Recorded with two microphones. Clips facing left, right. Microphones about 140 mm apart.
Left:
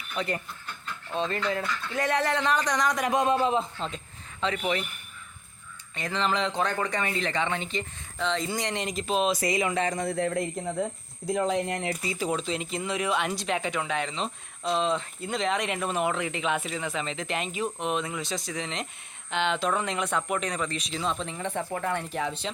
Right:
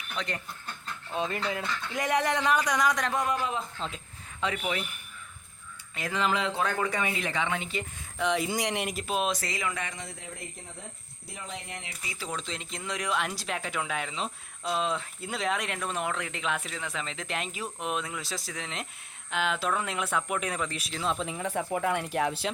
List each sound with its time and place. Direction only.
0.2 s speech: 5° left (ahead or behind)
1.1 s a man's voice: 10° right (ahead or behind)
3.1 s music: 25° left (ahead or behind)
3.8 s speech: centre (ahead or behind)
5.9 s a man's voice: 5° right (ahead or behind)
9.3 s music: 15° left (ahead or behind)
9.9 s speech: 60° left (ahead or behind)
12.4 s speech: 5° left (ahead or behind)